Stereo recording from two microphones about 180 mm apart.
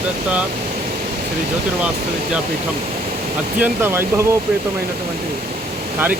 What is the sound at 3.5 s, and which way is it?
Speech, 10° right (ahead or behind).